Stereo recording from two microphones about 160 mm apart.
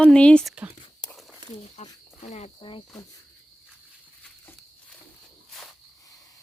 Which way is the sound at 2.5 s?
30° left (ahead or behind).